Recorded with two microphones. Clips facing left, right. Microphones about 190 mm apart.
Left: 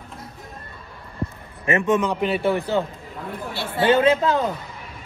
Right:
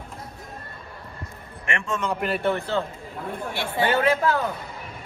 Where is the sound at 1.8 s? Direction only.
15° left (ahead or behind).